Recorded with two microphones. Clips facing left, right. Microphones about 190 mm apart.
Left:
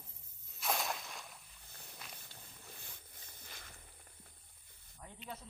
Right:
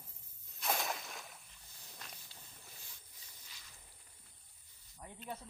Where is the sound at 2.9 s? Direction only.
55° left (ahead or behind).